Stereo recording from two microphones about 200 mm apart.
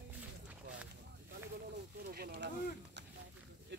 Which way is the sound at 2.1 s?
50° right (ahead or behind).